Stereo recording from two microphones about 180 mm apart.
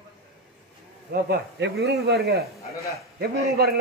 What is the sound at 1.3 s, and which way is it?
A man's voice, 65° right (ahead or behind).